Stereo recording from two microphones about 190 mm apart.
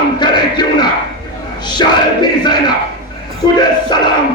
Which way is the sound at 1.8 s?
20° left (ahead or behind).